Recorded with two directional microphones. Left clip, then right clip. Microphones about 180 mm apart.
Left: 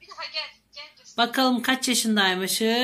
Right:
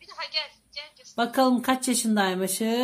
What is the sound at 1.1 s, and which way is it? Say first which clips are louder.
Speech: left 1 dB; 50° right (ahead or behind).